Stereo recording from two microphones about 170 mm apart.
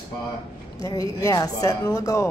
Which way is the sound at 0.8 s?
20° left (ahead or behind).